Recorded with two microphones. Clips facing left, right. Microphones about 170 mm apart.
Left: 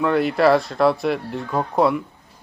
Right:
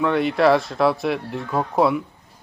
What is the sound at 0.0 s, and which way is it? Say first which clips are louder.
Speech: left 1 dB; centre (ahead or behind).